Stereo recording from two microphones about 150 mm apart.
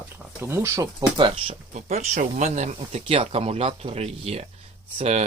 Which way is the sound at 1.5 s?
50° right (ahead or behind).